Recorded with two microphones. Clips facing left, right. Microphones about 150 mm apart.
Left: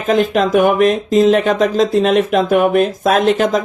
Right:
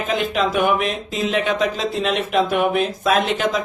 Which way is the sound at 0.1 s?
40° left (ahead or behind).